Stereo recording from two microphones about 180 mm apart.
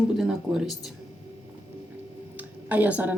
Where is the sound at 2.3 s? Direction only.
10° right (ahead or behind).